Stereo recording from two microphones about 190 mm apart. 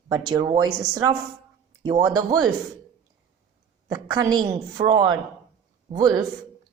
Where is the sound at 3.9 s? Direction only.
20° right (ahead or behind).